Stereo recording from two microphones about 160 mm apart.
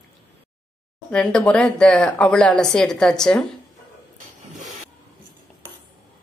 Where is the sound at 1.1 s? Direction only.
5° left (ahead or behind).